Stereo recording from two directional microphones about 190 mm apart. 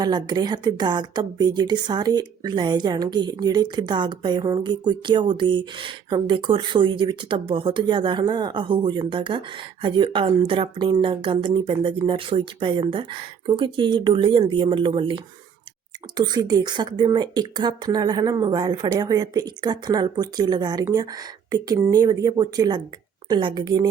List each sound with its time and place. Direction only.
0.0 s speech: 20° right (ahead or behind)